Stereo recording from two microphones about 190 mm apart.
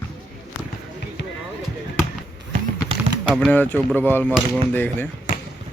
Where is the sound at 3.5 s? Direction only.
10° left (ahead or behind).